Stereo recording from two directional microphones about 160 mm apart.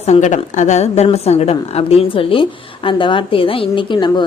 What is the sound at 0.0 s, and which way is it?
A woman's voice, 45° left (ahead or behind).